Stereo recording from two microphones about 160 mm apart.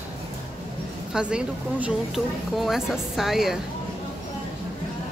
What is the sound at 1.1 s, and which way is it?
Speech, 5° right (ahead or behind).